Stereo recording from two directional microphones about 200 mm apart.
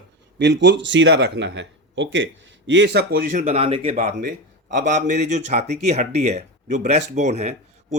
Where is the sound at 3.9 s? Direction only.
45° right (ahead or behind).